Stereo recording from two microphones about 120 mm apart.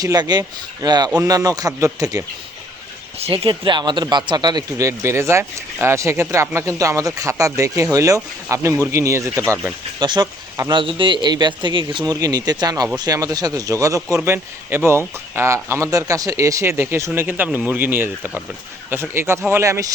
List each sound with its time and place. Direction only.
0.0 s speech: 35° right (ahead or behind)
3.2 s speech: 55° right (ahead or behind); by 9.4 s 25° right (ahead or behind)
10.0 s speech: 35° right (ahead or behind)